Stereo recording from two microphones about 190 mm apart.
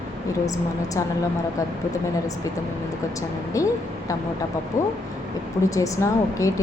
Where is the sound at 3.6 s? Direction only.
15° left (ahead or behind).